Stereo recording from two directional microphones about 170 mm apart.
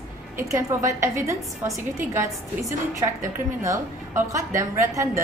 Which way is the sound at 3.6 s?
20° right (ahead or behind).